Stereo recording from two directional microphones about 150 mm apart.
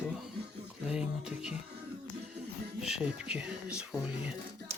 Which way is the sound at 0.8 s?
5° right (ahead or behind).